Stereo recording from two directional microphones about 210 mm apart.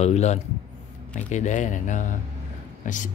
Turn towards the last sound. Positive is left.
turn(degrees=40)  # may be behind; listen again after turning